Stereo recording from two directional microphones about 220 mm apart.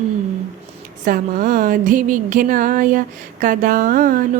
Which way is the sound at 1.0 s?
40° right (ahead or behind).